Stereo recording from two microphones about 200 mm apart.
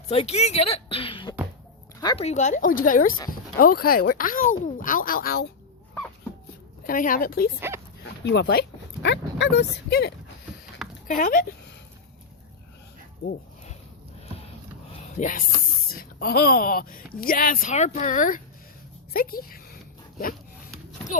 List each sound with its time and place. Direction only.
0.1 s a woman's voice: 30° left (ahead or behind); by 5.5 s 50° left (ahead or behind)
6.8 s a woman's voice: 45° left (ahead or behind); by 10.1 s 60° left (ahead or behind)
11.1 s a woman's voice: 45° left (ahead or behind)
15.1 s a woman's voice: 40° left (ahead or behind)
19.1 s a sound: 45° left (ahead or behind)